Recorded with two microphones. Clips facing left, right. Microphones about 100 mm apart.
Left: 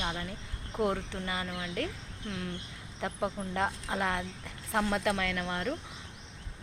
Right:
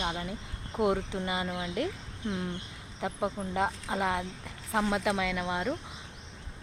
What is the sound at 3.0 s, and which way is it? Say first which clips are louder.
Speech: right 1 dB; 5° right (ahead or behind).